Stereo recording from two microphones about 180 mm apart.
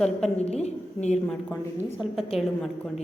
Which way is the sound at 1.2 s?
10° left (ahead or behind).